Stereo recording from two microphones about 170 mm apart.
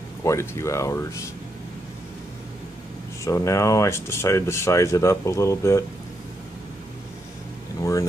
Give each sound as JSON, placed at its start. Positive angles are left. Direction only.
{"t": 0.2, "sound": "speech", "side_deg": 15}
{"t": 3.3, "sound": "speech", "side_deg": 20}
{"t": 7.8, "sound": "vehicle", "side_deg": 20}